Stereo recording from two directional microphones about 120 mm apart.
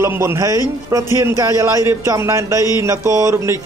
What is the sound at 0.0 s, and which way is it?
Speech, 20° right (ahead or behind).